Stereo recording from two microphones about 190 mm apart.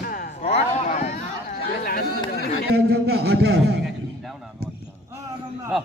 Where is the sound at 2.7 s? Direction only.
60° right (ahead or behind).